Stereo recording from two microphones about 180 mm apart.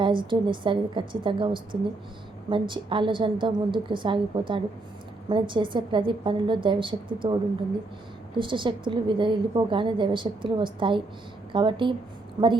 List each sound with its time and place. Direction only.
0.0 s a woman's voice: 25° right (ahead or behind)
8.4 s a woman's voice: 25° right (ahead or behind)